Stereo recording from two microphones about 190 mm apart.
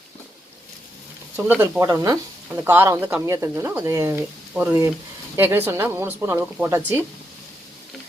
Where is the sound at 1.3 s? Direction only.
10° right (ahead or behind).